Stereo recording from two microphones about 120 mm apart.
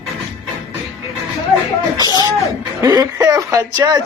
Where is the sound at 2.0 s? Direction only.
35° right (ahead or behind).